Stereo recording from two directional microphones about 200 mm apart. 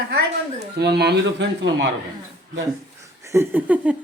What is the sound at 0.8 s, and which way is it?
Speech, 55° right (ahead or behind).